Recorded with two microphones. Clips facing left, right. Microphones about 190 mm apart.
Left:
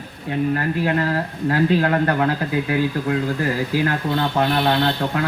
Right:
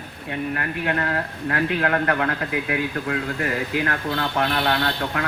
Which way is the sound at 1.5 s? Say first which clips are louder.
Left 4 dB; 30° left (ahead or behind).